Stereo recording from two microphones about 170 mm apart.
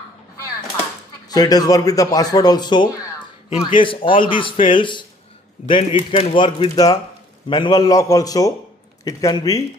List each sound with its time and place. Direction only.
1.3 s speech: 20° left (ahead or behind)